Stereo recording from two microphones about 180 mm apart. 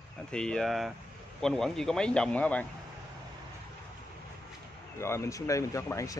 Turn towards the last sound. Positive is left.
turn(degrees=15)  # may be behind; listen again after turning